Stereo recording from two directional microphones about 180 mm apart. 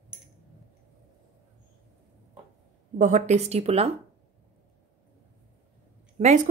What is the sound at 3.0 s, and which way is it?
Speech, 40° right (ahead or behind).